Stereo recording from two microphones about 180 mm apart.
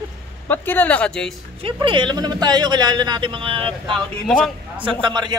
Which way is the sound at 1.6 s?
25° right (ahead or behind).